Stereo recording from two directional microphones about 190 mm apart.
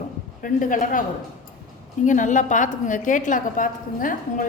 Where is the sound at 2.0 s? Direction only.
40° left (ahead or behind).